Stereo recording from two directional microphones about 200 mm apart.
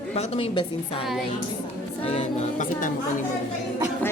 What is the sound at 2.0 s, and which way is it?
Speech, 35° left (ahead or behind).